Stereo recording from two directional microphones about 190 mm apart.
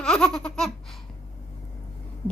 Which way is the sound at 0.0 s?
5° left (ahead or behind).